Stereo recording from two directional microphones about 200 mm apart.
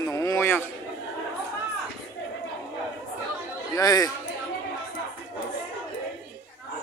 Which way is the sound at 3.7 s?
15° left (ahead or behind).